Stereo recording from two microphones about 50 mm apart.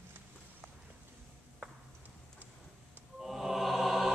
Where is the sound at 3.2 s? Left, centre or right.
Centre.